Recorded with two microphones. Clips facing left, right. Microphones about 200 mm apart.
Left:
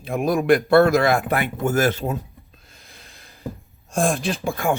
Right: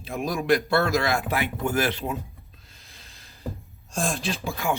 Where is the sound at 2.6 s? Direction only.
55° left (ahead or behind).